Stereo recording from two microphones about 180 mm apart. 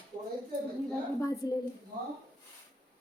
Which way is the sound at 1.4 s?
20° left (ahead or behind).